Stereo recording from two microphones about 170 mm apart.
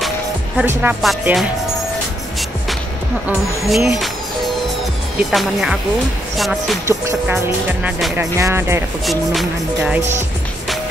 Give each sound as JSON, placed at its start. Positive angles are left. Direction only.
{"t": 0.6, "sound": "speech", "side_deg": -10}
{"t": 1.0, "sound": "music", "side_deg": 0}
{"t": 3.3, "sound": "music", "side_deg": 0}
{"t": 5.3, "sound": "music", "side_deg": 0}
{"t": 6.9, "sound": "speech", "side_deg": -15}
{"t": 9.0, "sound": "music", "side_deg": 0}
{"t": 9.9, "sound": "speech", "side_deg": -15}